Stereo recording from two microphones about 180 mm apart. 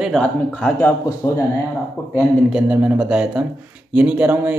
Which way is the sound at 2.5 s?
10° right (ahead or behind).